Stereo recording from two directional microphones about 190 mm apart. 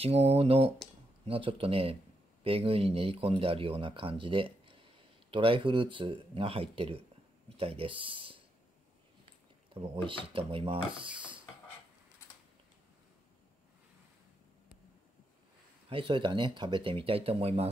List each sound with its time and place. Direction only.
0.0 s speech: 30° right (ahead or behind)
9.8 s speech: 30° right (ahead or behind)
15.9 s speech: 25° right (ahead or behind)